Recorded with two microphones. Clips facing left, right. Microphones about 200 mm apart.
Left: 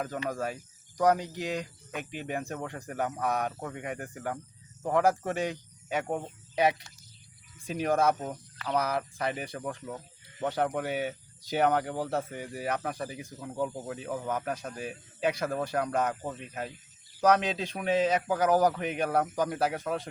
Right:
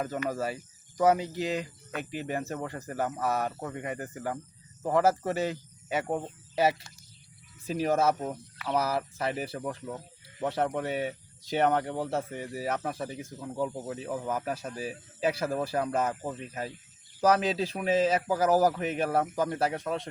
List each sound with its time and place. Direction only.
0.3 s speech: 5° right (ahead or behind)